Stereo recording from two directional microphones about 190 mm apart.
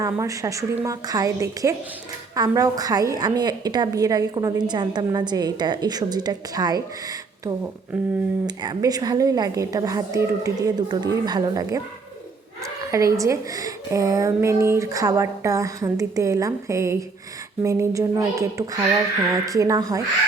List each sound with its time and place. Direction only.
0.0 s a woman's voice: 15° right (ahead or behind)
8.4 s a woman's voice: 20° right (ahead or behind)
12.9 s a woman's voice: 15° right (ahead or behind)